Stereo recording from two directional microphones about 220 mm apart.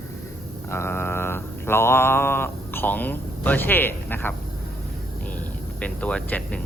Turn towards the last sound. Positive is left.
turn(degrees=5)  # may be behind; listen again after turning